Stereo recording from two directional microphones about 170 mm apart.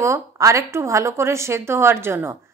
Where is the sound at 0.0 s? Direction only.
15° right (ahead or behind).